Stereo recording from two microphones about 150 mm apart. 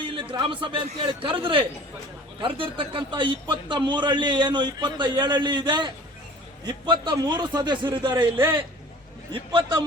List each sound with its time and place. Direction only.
0.0 s a man's voice: 35° right (ahead or behind)
9.3 s a man's voice: 30° right (ahead or behind)